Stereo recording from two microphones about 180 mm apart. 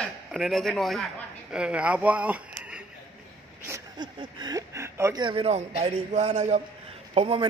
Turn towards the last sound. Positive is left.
turn(degrees=-30)  # may be behind; listen again after turning